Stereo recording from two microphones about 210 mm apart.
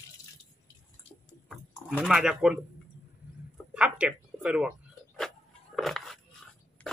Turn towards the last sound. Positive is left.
turn(degrees=5)  # may be behind; listen again after turning